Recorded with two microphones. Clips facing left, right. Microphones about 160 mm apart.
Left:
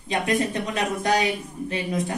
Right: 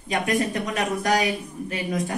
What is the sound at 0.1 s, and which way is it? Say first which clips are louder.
Speech: even; 25° left (ahead or behind).